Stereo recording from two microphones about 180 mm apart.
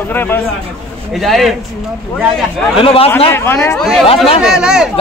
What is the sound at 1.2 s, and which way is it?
Speech, centre (ahead or behind).